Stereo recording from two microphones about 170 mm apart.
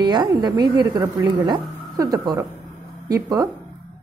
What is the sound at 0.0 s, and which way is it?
A woman's voice, 25° right (ahead or behind).